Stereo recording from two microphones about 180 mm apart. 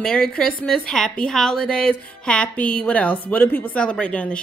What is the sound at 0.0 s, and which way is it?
A woman's voice, 5° left (ahead or behind).